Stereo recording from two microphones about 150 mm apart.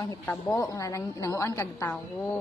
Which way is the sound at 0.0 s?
25° left (ahead or behind).